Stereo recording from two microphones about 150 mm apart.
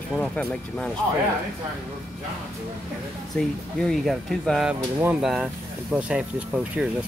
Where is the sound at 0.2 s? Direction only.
5° left (ahead or behind).